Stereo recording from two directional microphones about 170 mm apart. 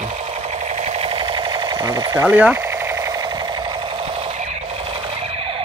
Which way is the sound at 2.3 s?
10° right (ahead or behind).